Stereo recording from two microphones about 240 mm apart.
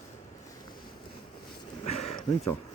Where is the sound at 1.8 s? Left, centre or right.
Left.